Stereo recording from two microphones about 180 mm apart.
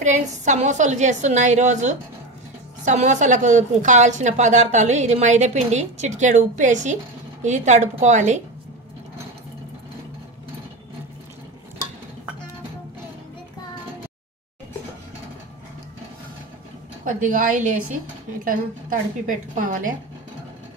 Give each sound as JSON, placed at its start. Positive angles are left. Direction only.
{"t": 0.0, "sound": "a woman's voice", "side_deg": -40}
{"t": 17.0, "sound": "a woman's voice", "side_deg": -45}